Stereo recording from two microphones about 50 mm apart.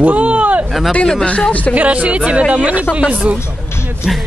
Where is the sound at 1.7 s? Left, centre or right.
Right.